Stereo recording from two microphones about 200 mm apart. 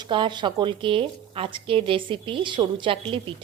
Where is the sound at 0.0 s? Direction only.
25° right (ahead or behind).